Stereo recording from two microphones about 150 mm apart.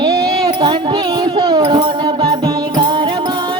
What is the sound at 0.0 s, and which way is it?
Music, 30° right (ahead or behind).